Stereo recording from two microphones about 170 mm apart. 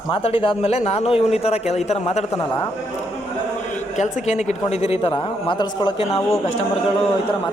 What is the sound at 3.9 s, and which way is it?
A man's voice, 45° left (ahead or behind).